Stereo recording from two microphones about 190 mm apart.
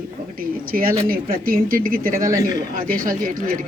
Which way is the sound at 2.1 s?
15° right (ahead or behind).